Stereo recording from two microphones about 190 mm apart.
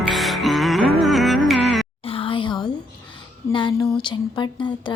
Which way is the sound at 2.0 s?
30° left (ahead or behind).